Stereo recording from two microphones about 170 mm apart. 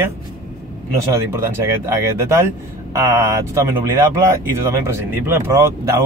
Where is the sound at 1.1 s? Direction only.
15° right (ahead or behind).